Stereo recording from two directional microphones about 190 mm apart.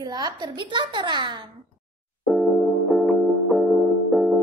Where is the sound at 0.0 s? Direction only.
20° right (ahead or behind).